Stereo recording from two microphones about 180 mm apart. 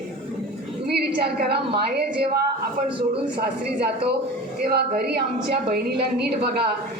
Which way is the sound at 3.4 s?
60° right (ahead or behind).